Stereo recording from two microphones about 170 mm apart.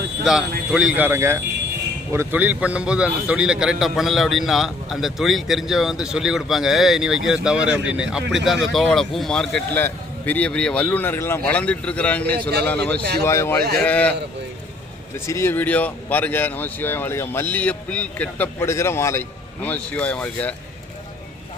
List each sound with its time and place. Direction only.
0.2 s speech: centre (ahead or behind)
12.4 s a man's voice: 70° right (ahead or behind)
13.2 s speech: 15° left (ahead or behind)
15.1 s speech: 15° left (ahead or behind)